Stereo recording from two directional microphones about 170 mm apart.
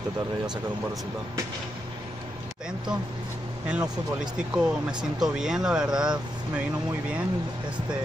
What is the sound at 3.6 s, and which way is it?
Speech, 5° right (ahead or behind).